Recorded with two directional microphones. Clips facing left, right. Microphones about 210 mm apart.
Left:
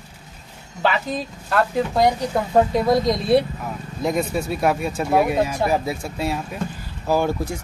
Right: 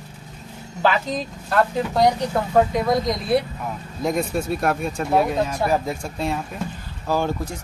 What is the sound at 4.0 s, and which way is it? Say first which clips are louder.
Speech: left 1 dB; centre (ahead or behind).